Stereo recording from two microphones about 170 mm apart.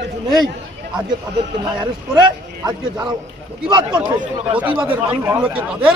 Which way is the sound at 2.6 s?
25° right (ahead or behind).